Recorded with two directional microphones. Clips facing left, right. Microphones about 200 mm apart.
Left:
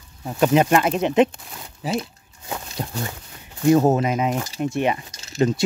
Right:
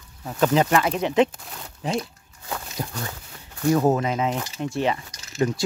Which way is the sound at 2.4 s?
25° left (ahead or behind).